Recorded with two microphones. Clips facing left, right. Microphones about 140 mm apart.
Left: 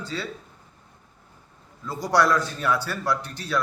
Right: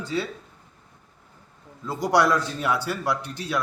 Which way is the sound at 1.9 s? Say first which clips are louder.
Right 1 dB; 20° right (ahead or behind).